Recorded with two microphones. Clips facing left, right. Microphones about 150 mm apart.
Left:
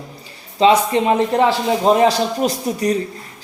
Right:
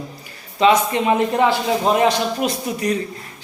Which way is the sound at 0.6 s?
30° left (ahead or behind).